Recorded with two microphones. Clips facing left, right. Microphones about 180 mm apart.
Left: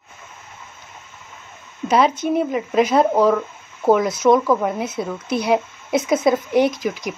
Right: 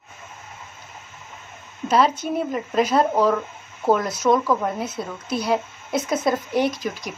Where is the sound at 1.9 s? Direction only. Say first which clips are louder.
Left 3 dB; centre (ahead or behind).